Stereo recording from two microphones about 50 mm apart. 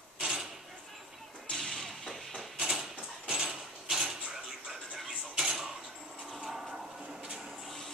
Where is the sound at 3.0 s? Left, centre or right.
Right.